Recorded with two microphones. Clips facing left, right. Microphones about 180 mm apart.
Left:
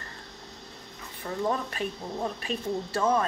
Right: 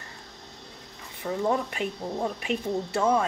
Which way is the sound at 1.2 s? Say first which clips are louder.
Right 3 dB; 20° right (ahead or behind).